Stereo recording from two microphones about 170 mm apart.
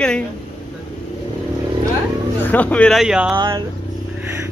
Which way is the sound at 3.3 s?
25° right (ahead or behind).